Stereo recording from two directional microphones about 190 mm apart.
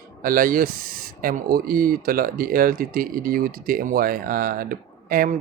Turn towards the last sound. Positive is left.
turn(degrees=-45)  # may be behind; listen again after turning